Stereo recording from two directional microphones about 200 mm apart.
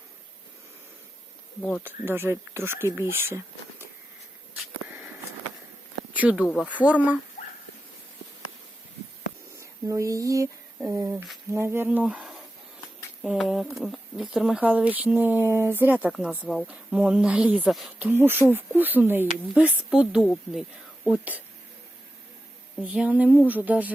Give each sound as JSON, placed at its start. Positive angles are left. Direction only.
{"t": 1.8, "sound": "speech", "side_deg": -10}
{"t": 6.1, "sound": "speech", "side_deg": -5}
{"t": 7.4, "sound": "a sound", "side_deg": 35}
{"t": 9.6, "sound": "speech", "side_deg": -15}
{"t": 22.8, "sound": "speech", "side_deg": -5}